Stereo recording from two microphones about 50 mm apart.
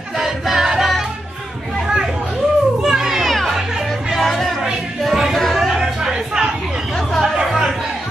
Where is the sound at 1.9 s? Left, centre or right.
Centre.